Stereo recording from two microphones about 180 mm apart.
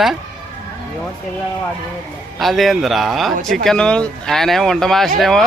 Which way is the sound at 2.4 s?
Centre (ahead or behind).